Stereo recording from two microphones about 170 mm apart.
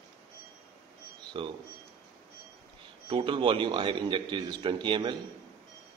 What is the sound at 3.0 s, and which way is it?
A man's voice, 30° right (ahead or behind).